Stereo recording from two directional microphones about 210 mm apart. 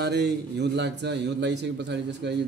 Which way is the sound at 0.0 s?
50° right (ahead or behind).